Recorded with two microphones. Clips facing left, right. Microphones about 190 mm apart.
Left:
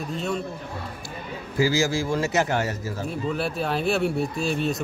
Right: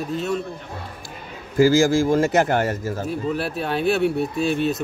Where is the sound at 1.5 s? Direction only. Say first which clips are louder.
Right 7 dB; 50° right (ahead or behind).